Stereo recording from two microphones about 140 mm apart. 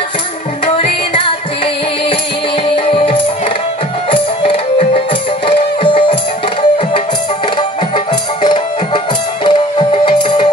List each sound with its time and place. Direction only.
0.7 s music: 40° left (ahead or behind)
2.7 s music: 40° left (ahead or behind)
8.4 s music: 35° left (ahead or behind)